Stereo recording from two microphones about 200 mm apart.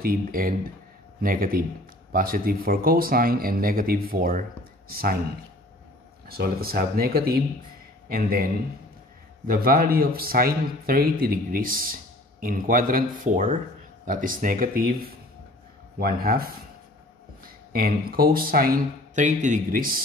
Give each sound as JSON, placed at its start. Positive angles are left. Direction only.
{"t": 0.0, "sound": "a man's voice", "side_deg": -45}
{"t": 6.2, "sound": "a man's voice", "side_deg": -50}
{"t": 9.5, "sound": "a man's voice", "side_deg": -45}
{"t": 17.7, "sound": "a man's voice", "side_deg": -50}